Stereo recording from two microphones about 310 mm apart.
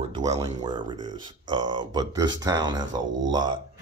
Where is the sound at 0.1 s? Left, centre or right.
Centre.